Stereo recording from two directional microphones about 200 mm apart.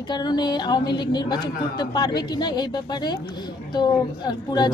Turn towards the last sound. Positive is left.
turn(degrees=20)  # may be behind; listen again after turning